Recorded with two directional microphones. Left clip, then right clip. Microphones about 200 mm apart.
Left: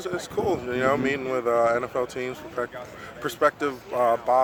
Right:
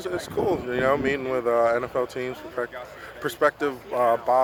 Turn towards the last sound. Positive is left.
turn(degrees=0)  # may be behind; listen again after turning